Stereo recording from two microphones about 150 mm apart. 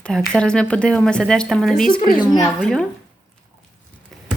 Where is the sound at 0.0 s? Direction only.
5° left (ahead or behind).